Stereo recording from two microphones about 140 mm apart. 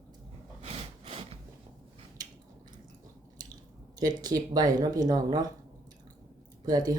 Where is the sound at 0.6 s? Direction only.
45° right (ahead or behind).